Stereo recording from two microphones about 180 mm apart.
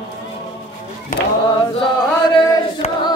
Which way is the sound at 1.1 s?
45° left (ahead or behind).